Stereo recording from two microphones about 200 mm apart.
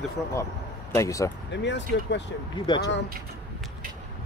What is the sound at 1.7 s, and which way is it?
Speech, 60° left (ahead or behind).